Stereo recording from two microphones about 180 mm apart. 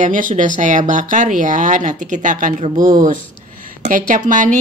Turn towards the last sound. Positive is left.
turn(degrees=-45)  # may be behind; listen again after turning